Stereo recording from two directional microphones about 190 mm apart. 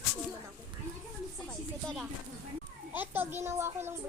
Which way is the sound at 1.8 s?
Centre (ahead or behind).